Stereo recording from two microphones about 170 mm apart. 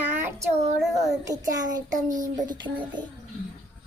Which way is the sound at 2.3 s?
25° right (ahead or behind).